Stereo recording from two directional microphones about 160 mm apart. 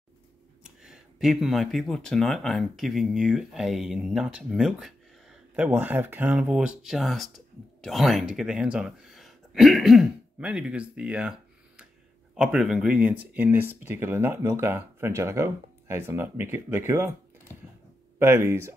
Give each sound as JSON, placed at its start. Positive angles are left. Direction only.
{"t": 0.7, "sound": "speech", "side_deg": -5}
{"t": 18.2, "sound": "speech", "side_deg": -15}